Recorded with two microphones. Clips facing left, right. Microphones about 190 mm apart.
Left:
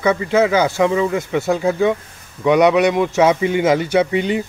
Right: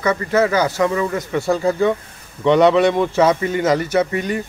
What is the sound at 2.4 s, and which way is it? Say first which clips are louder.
Speech: even; 15° left (ahead or behind).